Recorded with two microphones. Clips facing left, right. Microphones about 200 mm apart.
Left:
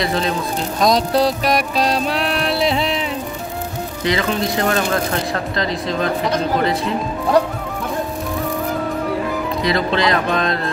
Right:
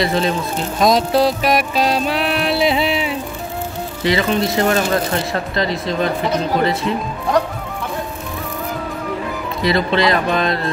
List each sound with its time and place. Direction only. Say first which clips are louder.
0.0 s music: right 2 dB; centre (ahead or behind)
9.6 s music: right 3 dB; centre (ahead or behind)